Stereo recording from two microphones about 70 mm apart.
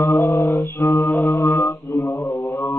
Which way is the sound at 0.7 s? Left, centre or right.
Left.